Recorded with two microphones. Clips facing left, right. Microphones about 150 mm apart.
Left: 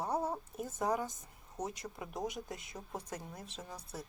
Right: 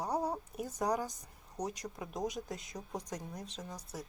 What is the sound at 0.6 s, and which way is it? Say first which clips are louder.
A woman's voice: right 1 dB; 5° left (ahead or behind).